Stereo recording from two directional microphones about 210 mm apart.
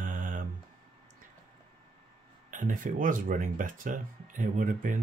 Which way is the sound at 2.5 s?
40° right (ahead or behind).